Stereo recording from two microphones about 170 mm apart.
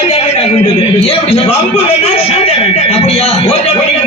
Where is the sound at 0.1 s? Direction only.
40° left (ahead or behind).